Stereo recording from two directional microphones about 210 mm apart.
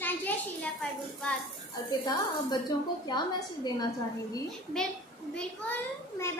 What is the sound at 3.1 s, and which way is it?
A woman's voice, 20° left (ahead or behind).